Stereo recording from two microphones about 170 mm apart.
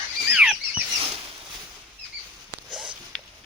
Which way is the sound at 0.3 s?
5° right (ahead or behind).